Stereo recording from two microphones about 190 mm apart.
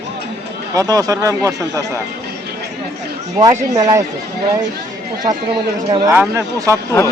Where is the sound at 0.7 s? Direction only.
20° right (ahead or behind).